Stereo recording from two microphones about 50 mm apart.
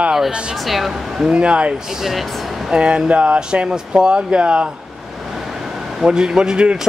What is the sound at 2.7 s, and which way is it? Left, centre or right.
Speech, centre.